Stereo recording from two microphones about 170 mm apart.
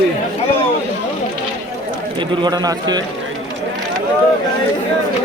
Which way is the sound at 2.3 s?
25° right (ahead or behind).